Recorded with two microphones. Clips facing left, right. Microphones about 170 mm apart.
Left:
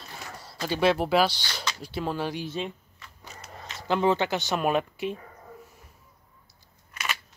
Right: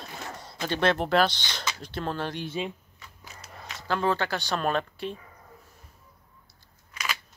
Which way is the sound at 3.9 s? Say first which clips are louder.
Left 3 dB; 20° left (ahead or behind).